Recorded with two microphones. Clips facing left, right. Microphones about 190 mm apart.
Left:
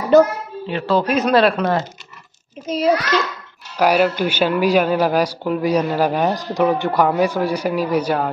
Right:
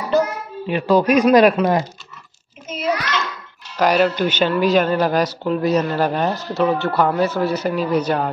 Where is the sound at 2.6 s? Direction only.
35° left (ahead or behind).